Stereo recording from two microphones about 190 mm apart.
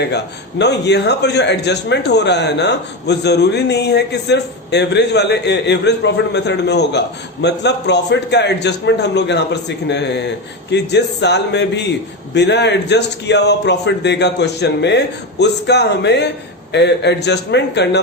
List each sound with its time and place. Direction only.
0.6 s speech: 65° left (ahead or behind)